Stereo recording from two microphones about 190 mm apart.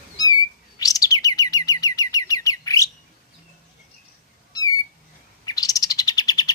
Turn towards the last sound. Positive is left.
turn(degrees=20)  # may be behind; listen again after turning